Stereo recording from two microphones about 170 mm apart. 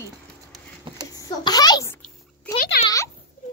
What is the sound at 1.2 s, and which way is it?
Speech, 25° left (ahead or behind).